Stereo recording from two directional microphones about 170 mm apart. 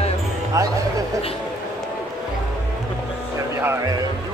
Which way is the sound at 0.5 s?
20° right (ahead or behind).